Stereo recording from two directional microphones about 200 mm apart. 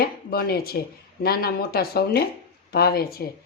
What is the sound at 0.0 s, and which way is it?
Speech, 50° left (ahead or behind).